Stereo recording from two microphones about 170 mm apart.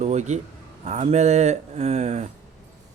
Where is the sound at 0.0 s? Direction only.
40° right (ahead or behind).